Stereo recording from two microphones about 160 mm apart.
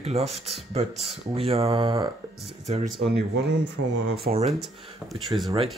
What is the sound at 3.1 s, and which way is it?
Speech, 90° right.